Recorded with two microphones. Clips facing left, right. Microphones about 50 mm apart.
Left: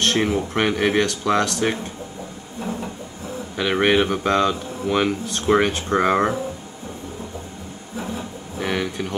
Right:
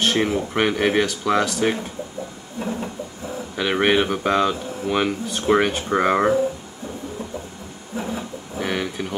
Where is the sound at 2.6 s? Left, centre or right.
Centre.